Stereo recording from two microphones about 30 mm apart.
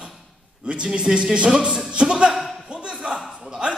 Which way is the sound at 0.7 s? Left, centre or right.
Right.